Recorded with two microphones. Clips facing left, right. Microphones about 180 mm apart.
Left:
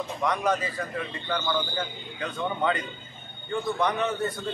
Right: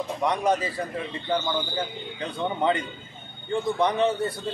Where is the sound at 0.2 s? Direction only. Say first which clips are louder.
Right 2 dB; 30° right (ahead or behind).